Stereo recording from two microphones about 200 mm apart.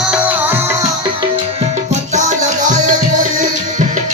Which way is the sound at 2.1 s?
35° right (ahead or behind).